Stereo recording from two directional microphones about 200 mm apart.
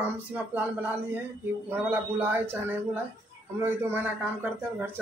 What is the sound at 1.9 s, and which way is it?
Speech, 10° right (ahead or behind).